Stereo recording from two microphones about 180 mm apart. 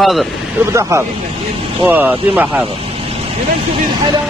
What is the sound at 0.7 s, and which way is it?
Speech, 15° right (ahead or behind).